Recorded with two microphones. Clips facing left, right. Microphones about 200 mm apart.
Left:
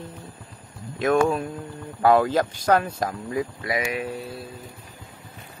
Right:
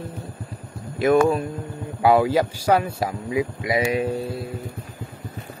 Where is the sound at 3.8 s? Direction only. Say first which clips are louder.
Right 6 dB; 30° right (ahead or behind).